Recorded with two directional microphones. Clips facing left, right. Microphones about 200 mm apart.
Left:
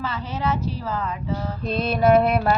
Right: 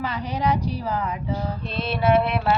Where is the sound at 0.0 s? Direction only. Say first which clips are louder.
Right 2 dB; 15° right (ahead or behind).